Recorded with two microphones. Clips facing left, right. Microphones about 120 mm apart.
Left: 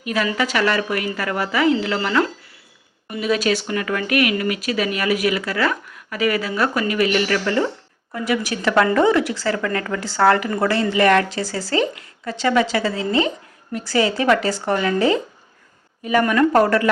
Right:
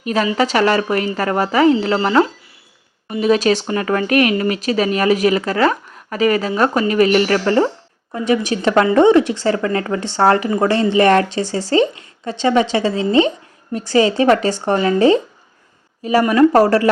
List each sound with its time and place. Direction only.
0.0 s a woman's voice: 35° right (ahead or behind)
8.3 s speech: 30° right (ahead or behind)
16.3 s speech: 30° right (ahead or behind)